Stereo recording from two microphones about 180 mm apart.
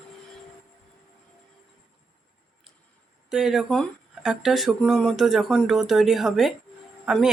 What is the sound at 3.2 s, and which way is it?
Speech, 5° right (ahead or behind).